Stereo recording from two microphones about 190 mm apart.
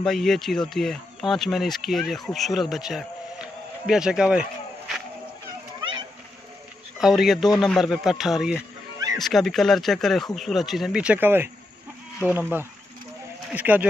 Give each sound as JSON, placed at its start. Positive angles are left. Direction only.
{"t": 0.0, "sound": "speech", "side_deg": 0}
{"t": 5.8, "sound": "a sound", "side_deg": -25}
{"t": 7.0, "sound": "speech", "side_deg": 0}